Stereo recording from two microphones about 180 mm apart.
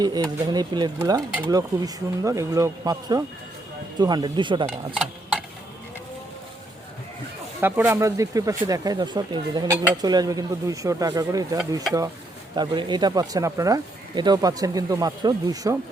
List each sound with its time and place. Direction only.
0.0 s speech: 20° right (ahead or behind)
7.6 s speech: 15° right (ahead or behind)
12.5 s speech: 25° right (ahead or behind)